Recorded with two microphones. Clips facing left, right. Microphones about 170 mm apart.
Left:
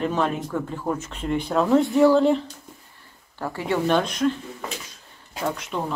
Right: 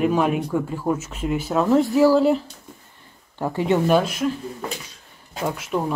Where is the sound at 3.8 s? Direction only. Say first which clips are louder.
Right 2 dB; 5° right (ahead or behind).